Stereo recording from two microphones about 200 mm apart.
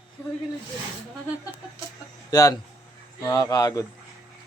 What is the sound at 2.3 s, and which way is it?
A man's voice, 20° left (ahead or behind).